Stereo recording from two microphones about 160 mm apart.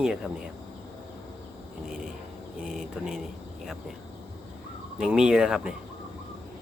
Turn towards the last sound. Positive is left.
turn(degrees=-5)  # may be behind; listen again after turning